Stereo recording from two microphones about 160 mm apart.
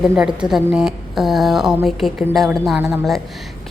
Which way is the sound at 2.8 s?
15° right (ahead or behind).